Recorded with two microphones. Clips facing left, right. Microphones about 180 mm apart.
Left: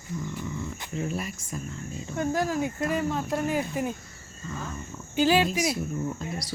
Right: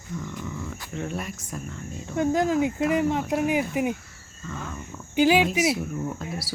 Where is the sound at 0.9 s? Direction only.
Centre (ahead or behind).